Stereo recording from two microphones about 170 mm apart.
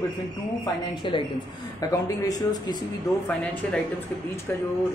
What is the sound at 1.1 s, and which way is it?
Speech, 30° left (ahead or behind).